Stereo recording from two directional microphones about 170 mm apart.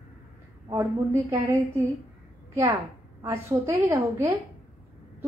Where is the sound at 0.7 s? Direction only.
15° right (ahead or behind).